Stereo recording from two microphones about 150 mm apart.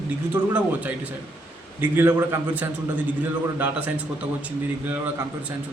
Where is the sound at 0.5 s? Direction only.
10° right (ahead or behind).